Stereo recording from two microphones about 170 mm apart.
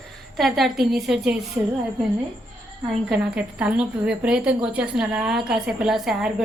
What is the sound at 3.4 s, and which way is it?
A woman's voice, 10° right (ahead or behind).